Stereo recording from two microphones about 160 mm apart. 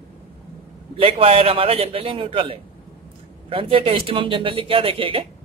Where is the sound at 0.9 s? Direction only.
35° right (ahead or behind).